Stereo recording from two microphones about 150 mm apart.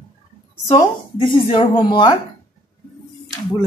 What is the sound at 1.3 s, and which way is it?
Speech, 35° left (ahead or behind).